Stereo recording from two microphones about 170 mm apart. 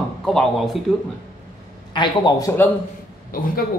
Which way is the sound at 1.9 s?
25° left (ahead or behind).